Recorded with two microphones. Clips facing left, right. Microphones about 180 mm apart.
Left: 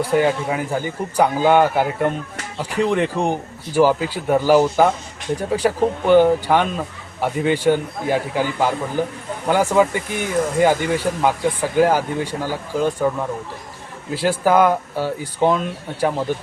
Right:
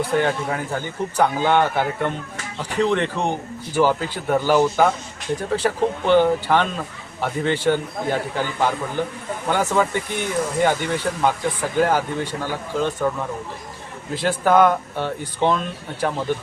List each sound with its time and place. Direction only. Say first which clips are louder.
0.0 s speech: left 3 dB; 10° left (ahead or behind)